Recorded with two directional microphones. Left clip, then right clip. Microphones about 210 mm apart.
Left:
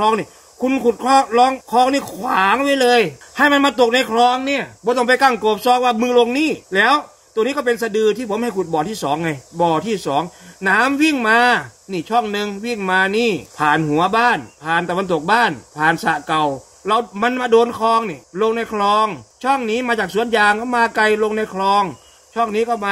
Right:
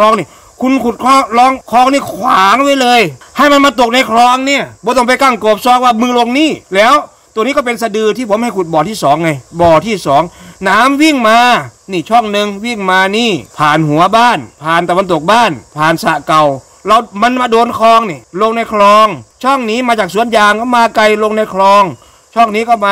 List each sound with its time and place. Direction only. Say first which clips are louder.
0.0 s speech: right 8 dB; 50° right (ahead or behind)